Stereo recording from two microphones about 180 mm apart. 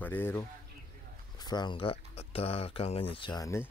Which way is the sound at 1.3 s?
25° left (ahead or behind).